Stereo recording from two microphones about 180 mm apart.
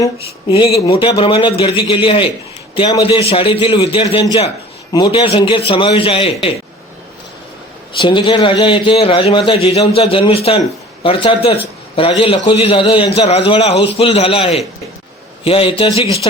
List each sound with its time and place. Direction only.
0.0 s a man's voice: 25° left (ahead or behind)
7.9 s a man's voice: 25° left (ahead or behind)